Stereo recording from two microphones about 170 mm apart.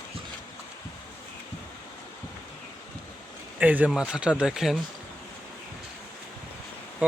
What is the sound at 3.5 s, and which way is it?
A man's voice, 10° right (ahead or behind).